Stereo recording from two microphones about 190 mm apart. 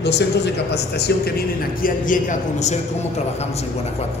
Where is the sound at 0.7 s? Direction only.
60° left (ahead or behind).